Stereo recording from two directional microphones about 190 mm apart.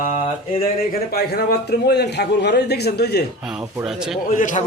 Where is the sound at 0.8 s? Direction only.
55° left (ahead or behind).